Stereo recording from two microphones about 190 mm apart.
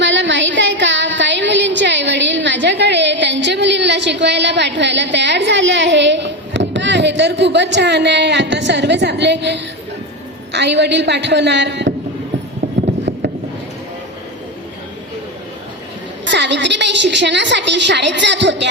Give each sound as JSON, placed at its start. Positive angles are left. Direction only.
{"t": 0.0, "sound": "a sound", "side_deg": -70}
{"t": 10.5, "sound": "a woman's voice", "side_deg": -65}
{"t": 16.2, "sound": "a woman's voice", "side_deg": -70}